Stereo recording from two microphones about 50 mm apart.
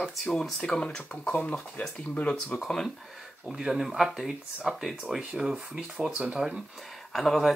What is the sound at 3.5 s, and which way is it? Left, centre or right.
Speech, centre.